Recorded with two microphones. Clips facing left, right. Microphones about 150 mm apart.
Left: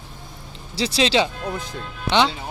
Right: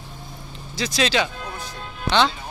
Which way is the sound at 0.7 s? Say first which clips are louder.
Left 3 dB; 30° left (ahead or behind).